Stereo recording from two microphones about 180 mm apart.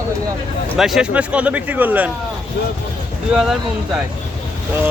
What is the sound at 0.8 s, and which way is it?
A man's voice, centre (ahead or behind).